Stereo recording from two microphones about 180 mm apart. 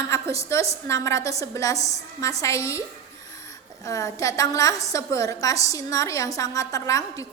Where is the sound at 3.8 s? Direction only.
20° left (ahead or behind).